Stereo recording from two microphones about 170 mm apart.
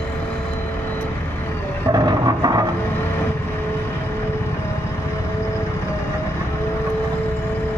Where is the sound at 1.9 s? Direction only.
20° right (ahead or behind).